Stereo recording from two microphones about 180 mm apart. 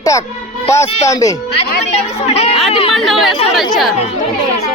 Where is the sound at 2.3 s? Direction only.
35° left (ahead or behind).